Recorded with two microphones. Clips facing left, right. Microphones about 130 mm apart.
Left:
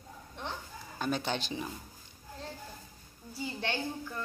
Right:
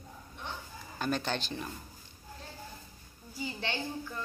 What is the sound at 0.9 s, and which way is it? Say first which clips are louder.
Speech: even; 5° left (ahead or behind).